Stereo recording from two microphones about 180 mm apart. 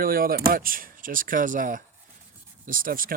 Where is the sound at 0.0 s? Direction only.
55° right (ahead or behind).